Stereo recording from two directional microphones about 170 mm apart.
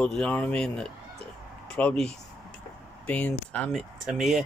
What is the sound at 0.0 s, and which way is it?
Speech, 5° left (ahead or behind).